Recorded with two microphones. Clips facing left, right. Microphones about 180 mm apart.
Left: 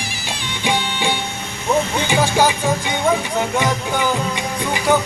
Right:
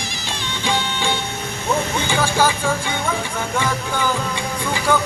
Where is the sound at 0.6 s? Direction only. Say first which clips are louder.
Left 2 dB; 15° left (ahead or behind).